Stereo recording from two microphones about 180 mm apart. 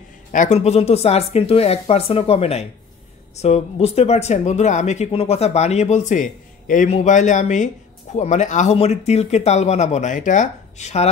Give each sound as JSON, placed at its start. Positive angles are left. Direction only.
{"t": 0.3, "sound": "speech", "side_deg": 45}